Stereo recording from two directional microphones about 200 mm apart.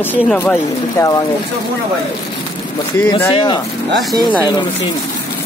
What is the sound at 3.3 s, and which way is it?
Speech, 25° left (ahead or behind).